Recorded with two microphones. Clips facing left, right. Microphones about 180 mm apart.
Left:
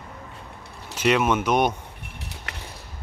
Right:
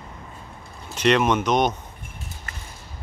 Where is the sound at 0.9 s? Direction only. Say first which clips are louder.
Right 2 dB; 5° left (ahead or behind).